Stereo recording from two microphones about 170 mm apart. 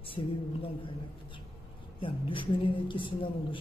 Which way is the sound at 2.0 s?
30° left (ahead or behind).